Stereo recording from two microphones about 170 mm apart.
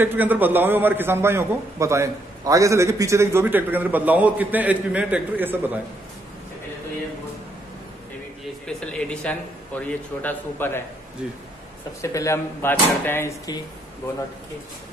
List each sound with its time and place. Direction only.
0.0 s a man's voice: 10° right (ahead or behind)
8.6 s a man's voice: 5° left (ahead or behind)
12.0 s a man's voice: 20° left (ahead or behind)